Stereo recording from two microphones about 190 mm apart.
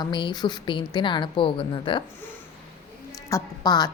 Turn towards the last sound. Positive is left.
turn(degrees=20)  # may be behind; listen again after turning